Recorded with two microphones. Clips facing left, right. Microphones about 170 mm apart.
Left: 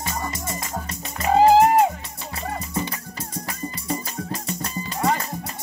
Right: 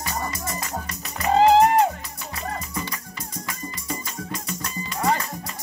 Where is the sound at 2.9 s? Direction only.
30° left (ahead or behind).